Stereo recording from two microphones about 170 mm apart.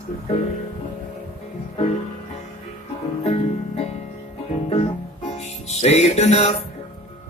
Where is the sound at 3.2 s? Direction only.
40° left (ahead or behind).